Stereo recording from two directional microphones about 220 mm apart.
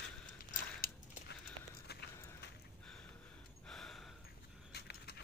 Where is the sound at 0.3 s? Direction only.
40° left (ahead or behind).